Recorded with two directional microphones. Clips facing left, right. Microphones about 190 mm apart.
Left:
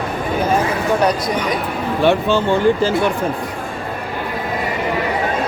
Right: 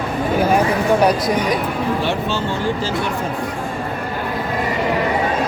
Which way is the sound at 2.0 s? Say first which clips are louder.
Left 6 dB; 55° left (ahead or behind).